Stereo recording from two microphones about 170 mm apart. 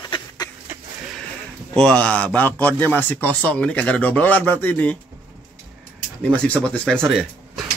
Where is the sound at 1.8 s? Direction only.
5° left (ahead or behind).